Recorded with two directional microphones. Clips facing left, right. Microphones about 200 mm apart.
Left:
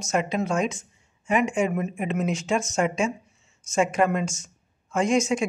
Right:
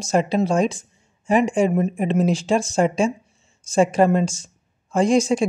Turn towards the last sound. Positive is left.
turn(degrees=-35)  # may be behind; listen again after turning